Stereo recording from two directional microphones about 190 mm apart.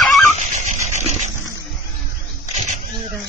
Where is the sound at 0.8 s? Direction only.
35° right (ahead or behind).